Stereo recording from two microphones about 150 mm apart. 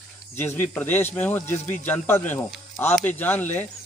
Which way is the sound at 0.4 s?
15° left (ahead or behind).